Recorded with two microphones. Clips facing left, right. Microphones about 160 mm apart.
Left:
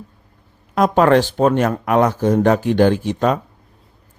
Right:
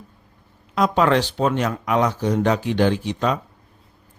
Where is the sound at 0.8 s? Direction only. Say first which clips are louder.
Left 5 dB; 50° left (ahead or behind).